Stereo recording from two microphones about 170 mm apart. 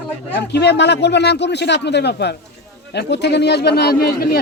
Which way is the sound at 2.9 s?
90° left.